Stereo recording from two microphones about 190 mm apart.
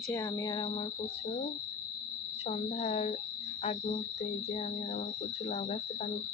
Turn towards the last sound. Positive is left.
turn(degrees=35)  # may be behind; listen again after turning